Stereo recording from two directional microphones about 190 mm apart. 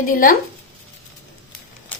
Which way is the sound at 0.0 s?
45° left (ahead or behind).